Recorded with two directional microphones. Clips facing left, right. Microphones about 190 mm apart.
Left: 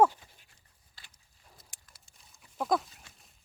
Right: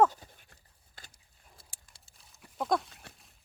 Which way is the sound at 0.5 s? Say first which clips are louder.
Right 5 dB; 50° right (ahead or behind).